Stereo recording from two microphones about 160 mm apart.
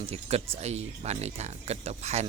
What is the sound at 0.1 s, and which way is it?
A man's voice, 40° right (ahead or behind).